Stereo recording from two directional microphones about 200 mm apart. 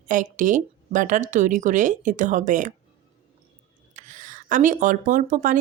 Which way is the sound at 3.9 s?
40° right (ahead or behind).